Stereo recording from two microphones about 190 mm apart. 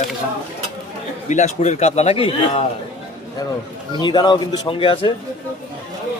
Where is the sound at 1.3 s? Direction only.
40° left (ahead or behind).